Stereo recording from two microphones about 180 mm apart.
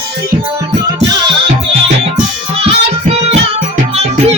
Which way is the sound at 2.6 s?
35° right (ahead or behind).